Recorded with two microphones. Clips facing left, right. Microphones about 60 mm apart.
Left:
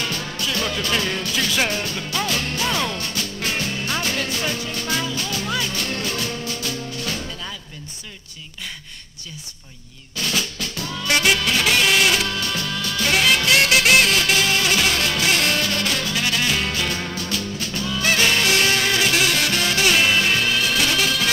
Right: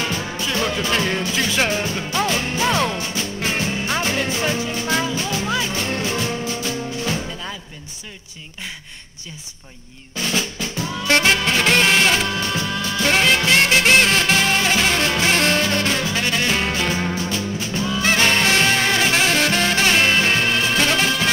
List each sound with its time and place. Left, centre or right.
0.0 s music: centre
10.1 s drum: centre
11.3 s music: centre
13.5 s music: right
18.9 s music: right
20.0 s music: centre
20.7 s music: right